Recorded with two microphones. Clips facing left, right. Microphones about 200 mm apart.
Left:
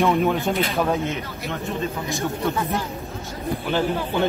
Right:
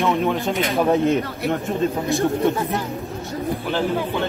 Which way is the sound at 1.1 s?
50° right (ahead or behind).